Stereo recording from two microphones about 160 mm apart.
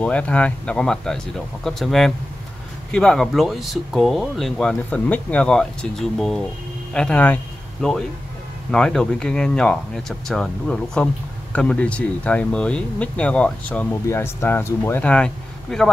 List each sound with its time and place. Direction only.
0.0 s speech: 10° left (ahead or behind)